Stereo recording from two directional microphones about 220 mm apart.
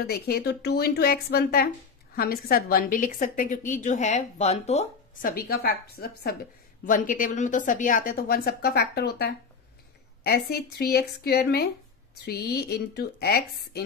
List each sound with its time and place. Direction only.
0.0 s a woman's voice: 45° left (ahead or behind); by 5.3 s 30° left (ahead or behind)
5.3 s a woman's voice: 45° left (ahead or behind)